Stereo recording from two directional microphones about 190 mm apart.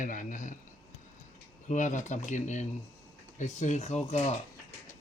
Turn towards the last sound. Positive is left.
turn(degrees=35)  # may be behind; listen again after turning